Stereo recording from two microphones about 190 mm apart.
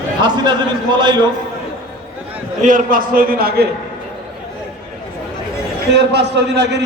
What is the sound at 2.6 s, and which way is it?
A man's voice, 45° right (ahead or behind).